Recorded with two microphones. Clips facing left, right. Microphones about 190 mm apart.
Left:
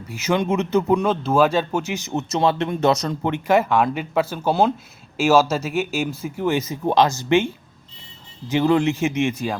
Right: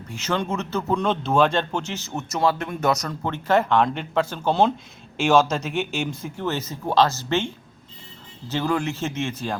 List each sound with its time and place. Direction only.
0.1 s speech: 10° left (ahead or behind)
1.0 s speech: centre (ahead or behind)